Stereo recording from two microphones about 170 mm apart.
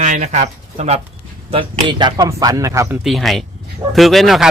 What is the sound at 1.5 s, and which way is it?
Speech, 30° right (ahead or behind).